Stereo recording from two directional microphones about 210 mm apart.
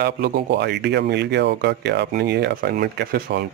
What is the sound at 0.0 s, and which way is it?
Speech, 50° right (ahead or behind).